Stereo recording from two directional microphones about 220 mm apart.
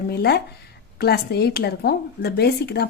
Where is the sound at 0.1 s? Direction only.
45° left (ahead or behind).